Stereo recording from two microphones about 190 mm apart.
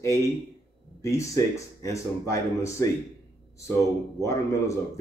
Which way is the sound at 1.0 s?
15° left (ahead or behind).